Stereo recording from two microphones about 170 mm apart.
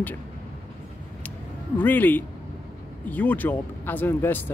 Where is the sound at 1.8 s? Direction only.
10° left (ahead or behind).